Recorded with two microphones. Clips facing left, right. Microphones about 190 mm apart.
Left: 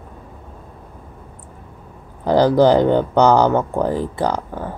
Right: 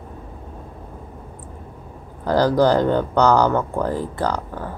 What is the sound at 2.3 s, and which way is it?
Speech, 20° left (ahead or behind).